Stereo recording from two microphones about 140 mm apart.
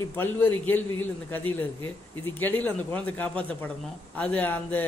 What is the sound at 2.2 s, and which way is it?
A man's voice, 15° left (ahead or behind).